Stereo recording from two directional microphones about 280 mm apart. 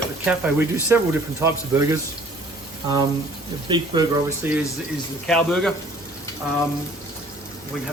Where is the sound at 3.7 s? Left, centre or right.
Centre.